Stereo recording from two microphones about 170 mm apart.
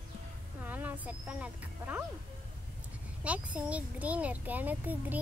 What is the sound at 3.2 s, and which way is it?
A child's voice, 10° right (ahead or behind).